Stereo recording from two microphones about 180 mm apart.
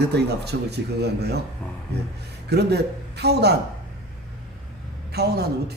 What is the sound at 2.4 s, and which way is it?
Speech, 65° right (ahead or behind).